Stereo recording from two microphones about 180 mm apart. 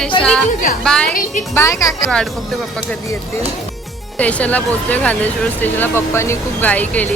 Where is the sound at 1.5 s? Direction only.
15° left (ahead or behind).